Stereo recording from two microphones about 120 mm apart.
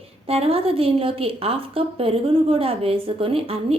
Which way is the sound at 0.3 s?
55° right (ahead or behind).